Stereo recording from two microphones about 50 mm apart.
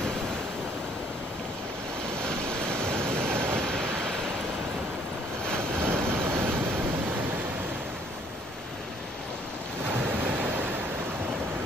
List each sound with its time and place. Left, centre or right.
2.2 s waves: centre
3.2 s vehicle: right
3.6 s vehicle: centre
5.8 s vehicle: right
6.2 s train: right
9.8 s vehicle: right